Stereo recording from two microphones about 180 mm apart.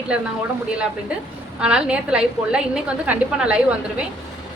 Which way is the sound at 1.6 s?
5° right (ahead or behind).